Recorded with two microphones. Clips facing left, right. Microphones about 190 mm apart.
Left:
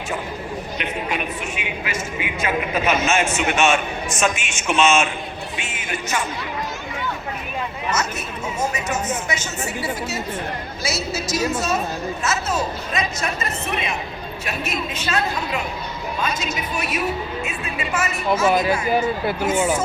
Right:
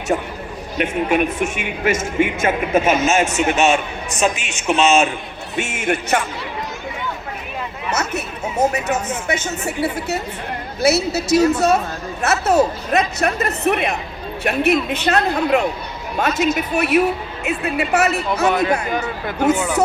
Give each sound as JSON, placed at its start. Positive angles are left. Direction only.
{"t": 0.8, "sound": "a man's voice", "side_deg": -50}
{"t": 5.7, "sound": "speech", "side_deg": -55}
{"t": 7.9, "sound": "a woman's voice", "side_deg": -65}
{"t": 18.9, "sound": "speech", "side_deg": 10}
{"t": 19.4, "sound": "a woman's voice", "side_deg": -65}